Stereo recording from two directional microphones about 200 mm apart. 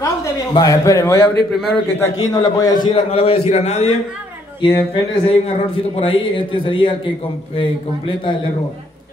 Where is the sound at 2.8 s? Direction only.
30° left (ahead or behind).